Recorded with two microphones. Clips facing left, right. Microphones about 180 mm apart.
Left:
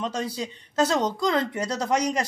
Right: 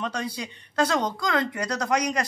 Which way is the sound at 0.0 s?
25° left (ahead or behind).